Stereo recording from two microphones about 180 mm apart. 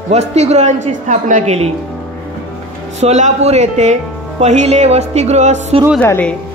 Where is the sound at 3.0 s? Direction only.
40° right (ahead or behind).